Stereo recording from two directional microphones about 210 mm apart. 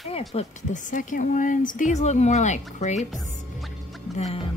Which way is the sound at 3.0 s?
Centre (ahead or behind).